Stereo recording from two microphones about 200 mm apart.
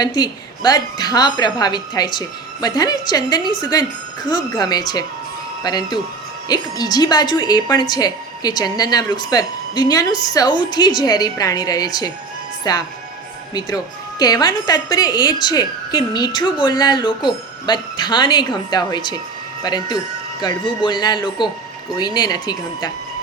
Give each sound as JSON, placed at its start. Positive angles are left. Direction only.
{"t": 0.0, "sound": "speech", "side_deg": 20}